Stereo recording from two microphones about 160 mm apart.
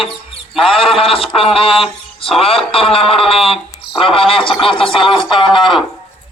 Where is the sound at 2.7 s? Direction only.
35° left (ahead or behind).